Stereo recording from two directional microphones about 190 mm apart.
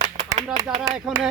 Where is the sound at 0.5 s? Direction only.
20° right (ahead or behind).